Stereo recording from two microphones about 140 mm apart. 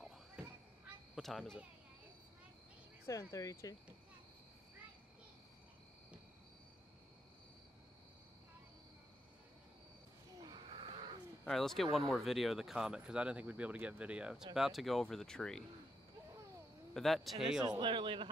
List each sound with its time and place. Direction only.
0.4 s children playing: 10° right (ahead or behind)
1.1 s speech: centre (ahead or behind)
3.1 s speech: 20° left (ahead or behind)
10.4 s a sound: 35° right (ahead or behind)
11.4 s speech: centre (ahead or behind)
16.9 s speech: centre (ahead or behind)
17.6 s a man's voice: 35° right (ahead or behind)